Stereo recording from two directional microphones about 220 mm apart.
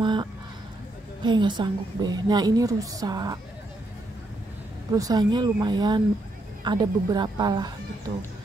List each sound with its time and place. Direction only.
0.0 s a sound: 20° right (ahead or behind)
1.2 s a woman's voice: 20° right (ahead or behind)
4.9 s speech: 15° right (ahead or behind)